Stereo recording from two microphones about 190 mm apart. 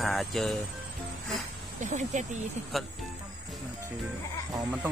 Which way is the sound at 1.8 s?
40° right (ahead or behind).